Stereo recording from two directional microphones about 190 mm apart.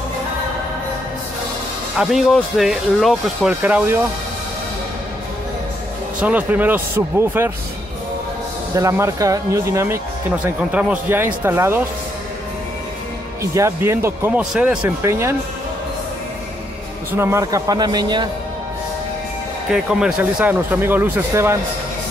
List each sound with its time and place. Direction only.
2.0 s speech: centre (ahead or behind)
6.2 s speech: 10° right (ahead or behind)
8.7 s speech: 15° right (ahead or behind)
13.4 s speech: 15° right (ahead or behind)
17.2 s speech: 15° right (ahead or behind)
19.7 s speech: 5° right (ahead or behind)